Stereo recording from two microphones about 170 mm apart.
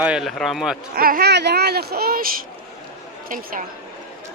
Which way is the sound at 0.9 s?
60° right (ahead or behind).